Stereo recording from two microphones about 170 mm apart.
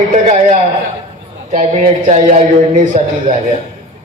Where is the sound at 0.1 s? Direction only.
40° right (ahead or behind).